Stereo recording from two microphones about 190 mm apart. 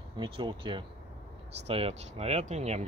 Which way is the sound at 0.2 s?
25° right (ahead or behind).